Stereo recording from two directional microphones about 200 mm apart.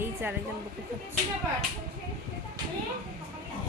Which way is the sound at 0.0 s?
10° right (ahead or behind).